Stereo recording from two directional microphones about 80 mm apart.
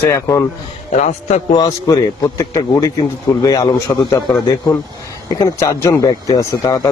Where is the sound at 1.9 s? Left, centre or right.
Left.